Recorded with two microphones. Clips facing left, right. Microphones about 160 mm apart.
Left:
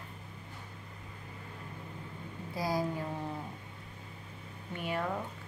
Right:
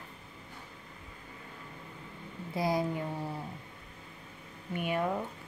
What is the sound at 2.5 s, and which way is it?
Speech, 25° right (ahead or behind).